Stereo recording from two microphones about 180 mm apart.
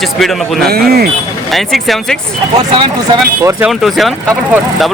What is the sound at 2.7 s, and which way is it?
Speech, 25° right (ahead or behind).